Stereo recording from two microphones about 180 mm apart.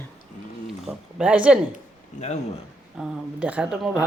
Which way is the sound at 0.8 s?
5° right (ahead or behind).